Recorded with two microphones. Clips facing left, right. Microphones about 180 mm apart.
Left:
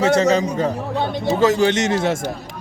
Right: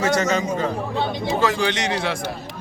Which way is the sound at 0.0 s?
30° left (ahead or behind).